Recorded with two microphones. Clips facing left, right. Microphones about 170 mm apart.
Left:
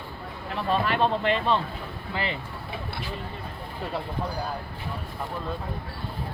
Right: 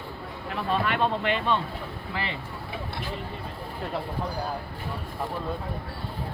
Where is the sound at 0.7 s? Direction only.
35° left (ahead or behind).